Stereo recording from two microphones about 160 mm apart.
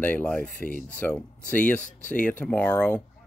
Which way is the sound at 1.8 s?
55° left (ahead or behind).